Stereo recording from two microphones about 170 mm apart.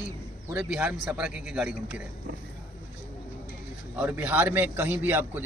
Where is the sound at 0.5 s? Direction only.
10° right (ahead or behind).